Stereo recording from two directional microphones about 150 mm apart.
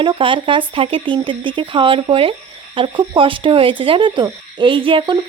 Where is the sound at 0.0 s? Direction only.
35° right (ahead or behind).